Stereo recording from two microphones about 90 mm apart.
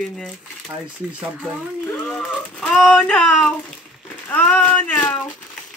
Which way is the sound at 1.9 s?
5° left (ahead or behind).